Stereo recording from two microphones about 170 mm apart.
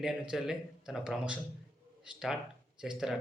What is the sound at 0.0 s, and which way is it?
Speech, 5° right (ahead or behind).